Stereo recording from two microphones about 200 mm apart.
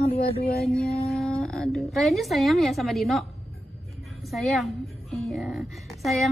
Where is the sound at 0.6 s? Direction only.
Centre (ahead or behind).